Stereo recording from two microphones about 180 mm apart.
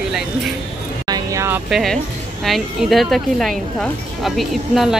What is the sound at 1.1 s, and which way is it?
Vehicle, 15° right (ahead or behind).